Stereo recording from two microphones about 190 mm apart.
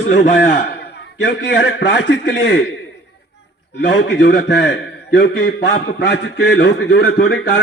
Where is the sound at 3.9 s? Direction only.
70° left (ahead or behind).